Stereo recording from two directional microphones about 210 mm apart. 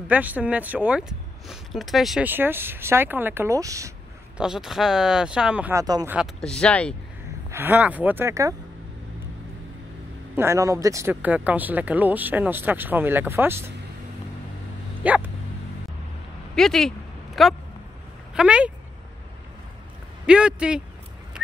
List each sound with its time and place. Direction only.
0.1 s speech: 10° right (ahead or behind)
4.4 s speech: 5° right (ahead or behind)
6.1 s speech: 5° left (ahead or behind)
7.5 s speech: 10° right (ahead or behind)
10.3 s speech: 10° right (ahead or behind)
15.0 s dog: 5° right (ahead or behind)
16.5 s speech: centre (ahead or behind)
20.2 s speech: 5° right (ahead or behind)